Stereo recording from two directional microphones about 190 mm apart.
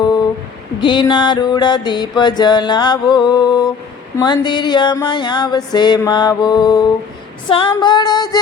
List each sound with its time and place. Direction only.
0.8 s mantra: 25° left (ahead or behind)